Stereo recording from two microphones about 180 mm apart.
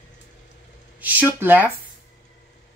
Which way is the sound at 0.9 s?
10° right (ahead or behind).